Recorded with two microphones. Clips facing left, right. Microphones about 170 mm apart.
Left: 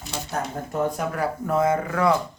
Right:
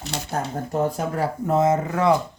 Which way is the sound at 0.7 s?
35° right (ahead or behind).